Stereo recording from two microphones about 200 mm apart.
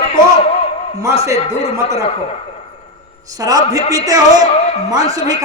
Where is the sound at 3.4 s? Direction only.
20° right (ahead or behind).